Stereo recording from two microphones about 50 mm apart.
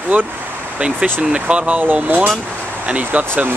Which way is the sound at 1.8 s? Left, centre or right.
Right.